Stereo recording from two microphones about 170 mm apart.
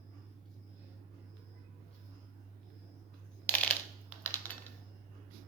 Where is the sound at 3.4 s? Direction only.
10° left (ahead or behind).